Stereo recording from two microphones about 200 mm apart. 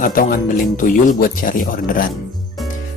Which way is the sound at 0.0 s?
45° left (ahead or behind).